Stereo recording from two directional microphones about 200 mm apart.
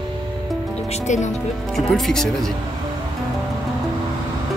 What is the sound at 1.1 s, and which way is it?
Speech, 35° left (ahead or behind).